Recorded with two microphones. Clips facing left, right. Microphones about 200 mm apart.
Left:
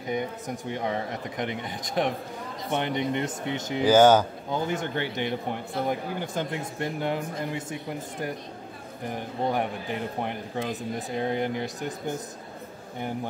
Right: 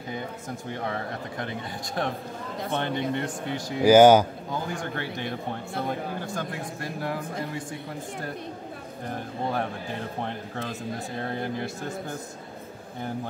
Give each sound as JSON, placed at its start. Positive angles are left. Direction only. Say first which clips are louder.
{"t": 0.1, "sound": "speech", "louder": "left 5 dB", "side_deg": 20}
{"t": 3.8, "sound": "speech", "louder": "right 3 dB", "side_deg": -10}
{"t": 4.6, "sound": "speech", "louder": "left 3 dB", "side_deg": 20}
{"t": 9.1, "sound": "speech", "louder": "left 2 dB", "side_deg": 15}